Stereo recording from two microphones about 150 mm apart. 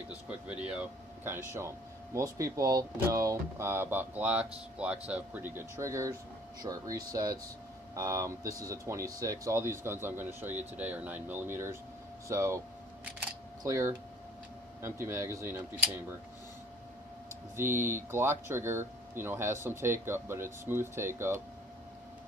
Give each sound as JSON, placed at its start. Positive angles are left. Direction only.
{"t": 0.3, "sound": "speech", "side_deg": -10}
{"t": 17.6, "sound": "speech", "side_deg": -15}